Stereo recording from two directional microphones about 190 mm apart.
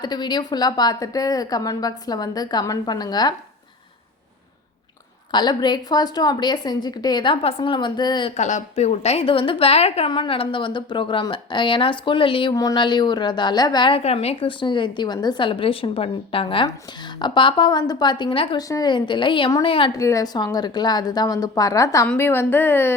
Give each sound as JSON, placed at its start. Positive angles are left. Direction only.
{"t": 0.0, "sound": "a woman's voice", "side_deg": 20}
{"t": 5.3, "sound": "a woman's voice", "side_deg": 20}
{"t": 8.4, "sound": "a woman's voice", "side_deg": 40}
{"t": 20.0, "sound": "a woman's voice", "side_deg": 15}